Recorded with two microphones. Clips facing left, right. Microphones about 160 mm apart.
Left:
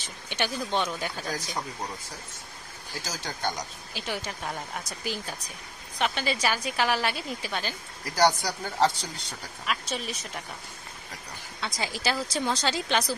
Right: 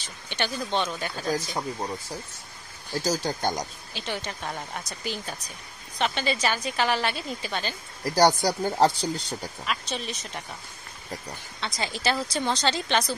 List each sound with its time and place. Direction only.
0.0 s speech: 15° left (ahead or behind)
1.3 s speech: 25° right (ahead or behind)
3.0 s speech: 35° right (ahead or behind)
3.9 s a woman's voice: 5° left (ahead or behind)
8.1 s speech: 35° right (ahead or behind)
9.7 s speech: 5° left (ahead or behind)
11.6 s a woman's voice: 5° left (ahead or behind)